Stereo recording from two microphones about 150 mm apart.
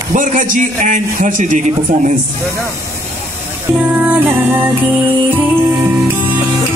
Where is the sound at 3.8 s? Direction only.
10° right (ahead or behind).